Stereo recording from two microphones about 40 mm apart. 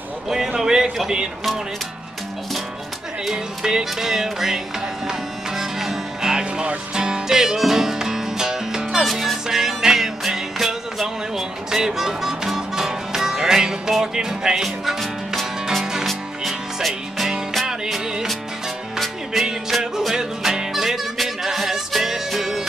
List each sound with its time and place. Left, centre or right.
0.3 s a sound: centre
0.9 s music: centre
3.3 s music: centre
5.6 s music: centre
15.8 s music: centre
16.1 s music: centre
17.6 s music: centre
19.3 s music: centre